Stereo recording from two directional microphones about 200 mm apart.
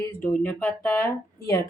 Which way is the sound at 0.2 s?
5° left (ahead or behind).